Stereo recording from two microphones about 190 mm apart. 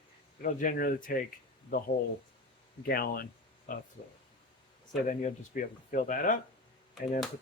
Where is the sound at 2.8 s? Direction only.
55° left (ahead or behind).